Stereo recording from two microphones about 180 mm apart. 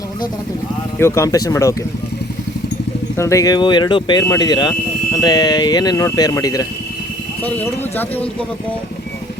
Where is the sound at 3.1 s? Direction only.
15° left (ahead or behind).